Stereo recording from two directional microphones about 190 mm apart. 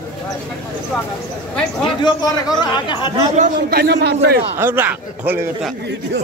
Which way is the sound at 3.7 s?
55° right (ahead or behind).